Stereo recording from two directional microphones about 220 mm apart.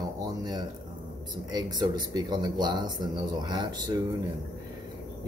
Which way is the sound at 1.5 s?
20° right (ahead or behind).